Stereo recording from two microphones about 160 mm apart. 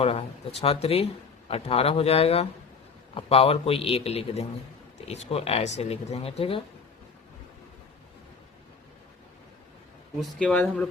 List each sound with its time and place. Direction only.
0.0 s speech: 35° left (ahead or behind)
10.2 s speech: 5° left (ahead or behind)